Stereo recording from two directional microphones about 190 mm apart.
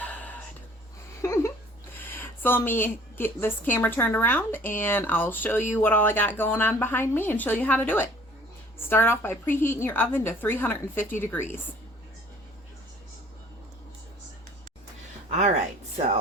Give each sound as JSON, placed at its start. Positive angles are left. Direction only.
{"t": 0.0, "sound": "a sound", "side_deg": 10}
{"t": 3.7, "sound": "speech", "side_deg": 10}
{"t": 15.3, "sound": "speech", "side_deg": -40}